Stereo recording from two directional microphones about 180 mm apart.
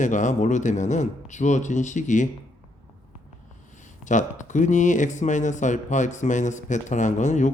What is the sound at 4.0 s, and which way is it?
Speech, 45° left (ahead or behind).